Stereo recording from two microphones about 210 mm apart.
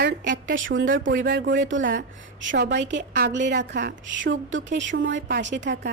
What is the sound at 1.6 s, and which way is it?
A woman's voice, 65° right (ahead or behind).